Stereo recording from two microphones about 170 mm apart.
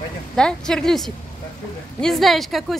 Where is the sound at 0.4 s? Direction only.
5° left (ahead or behind).